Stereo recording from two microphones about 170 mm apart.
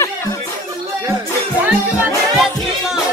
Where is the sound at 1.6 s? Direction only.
10° right (ahead or behind).